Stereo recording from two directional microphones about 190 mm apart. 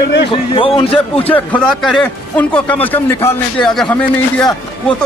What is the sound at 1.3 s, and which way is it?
A man's voice, 5° left (ahead or behind).